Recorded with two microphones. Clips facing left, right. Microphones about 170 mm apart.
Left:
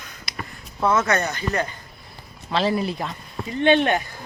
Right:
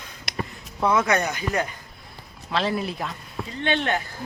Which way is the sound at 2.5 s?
Centre (ahead or behind).